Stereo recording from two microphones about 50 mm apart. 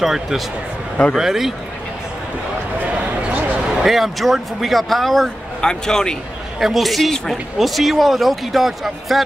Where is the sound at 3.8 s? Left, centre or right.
Centre.